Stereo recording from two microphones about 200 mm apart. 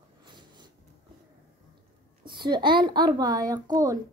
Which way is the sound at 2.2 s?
20° right (ahead or behind).